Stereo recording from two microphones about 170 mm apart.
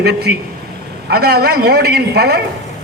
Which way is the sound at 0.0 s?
75° right (ahead or behind).